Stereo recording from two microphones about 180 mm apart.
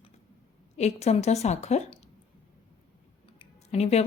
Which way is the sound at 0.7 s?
40° left (ahead or behind).